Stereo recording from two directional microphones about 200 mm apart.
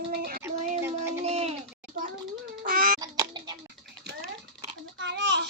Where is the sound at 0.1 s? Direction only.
50° right (ahead or behind).